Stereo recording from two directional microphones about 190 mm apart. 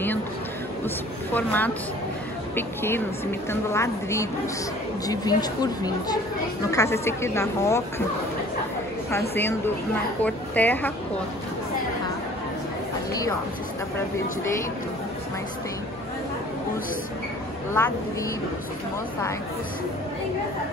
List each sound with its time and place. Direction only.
0.8 s a woman's voice: 10° left (ahead or behind)
9.3 s speech: 10° left (ahead or behind)
17.7 s speech: 15° left (ahead or behind)